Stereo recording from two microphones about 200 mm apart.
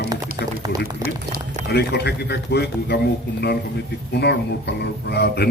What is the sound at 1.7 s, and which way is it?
A man's voice, 55° left (ahead or behind).